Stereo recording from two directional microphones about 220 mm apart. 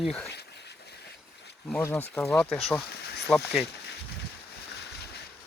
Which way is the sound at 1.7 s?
10° left (ahead or behind).